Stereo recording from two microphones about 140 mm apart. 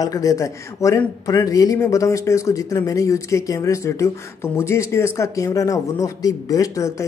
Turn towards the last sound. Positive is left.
turn(degrees=25)  # may be behind; listen again after turning